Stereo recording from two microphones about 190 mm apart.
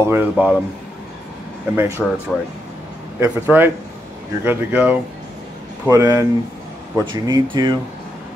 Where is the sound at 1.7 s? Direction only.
15° right (ahead or behind).